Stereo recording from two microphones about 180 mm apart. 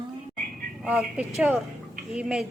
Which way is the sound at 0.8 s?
5° right (ahead or behind).